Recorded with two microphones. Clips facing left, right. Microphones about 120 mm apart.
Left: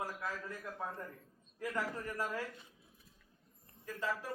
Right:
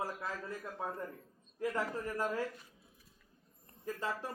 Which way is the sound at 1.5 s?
30° right (ahead or behind).